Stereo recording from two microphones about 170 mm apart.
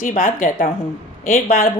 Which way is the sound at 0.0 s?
50° left (ahead or behind).